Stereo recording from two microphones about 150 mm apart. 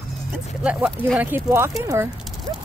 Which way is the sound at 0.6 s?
5° right (ahead or behind).